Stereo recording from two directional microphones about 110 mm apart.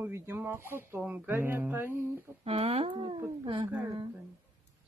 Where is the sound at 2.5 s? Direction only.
70° right (ahead or behind).